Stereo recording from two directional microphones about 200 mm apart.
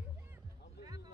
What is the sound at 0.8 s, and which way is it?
Basketball bounce, 20° right (ahead or behind).